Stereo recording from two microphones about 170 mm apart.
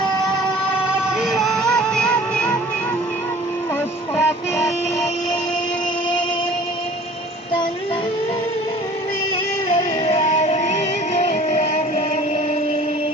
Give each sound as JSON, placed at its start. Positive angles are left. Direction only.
{"t": 1.0, "sound": "music", "side_deg": -5}
{"t": 4.2, "sound": "music", "side_deg": 15}
{"t": 10.0, "sound": "music", "side_deg": 35}